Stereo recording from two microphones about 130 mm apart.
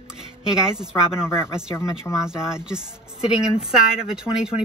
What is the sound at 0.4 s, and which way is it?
Speech, 5° right (ahead or behind).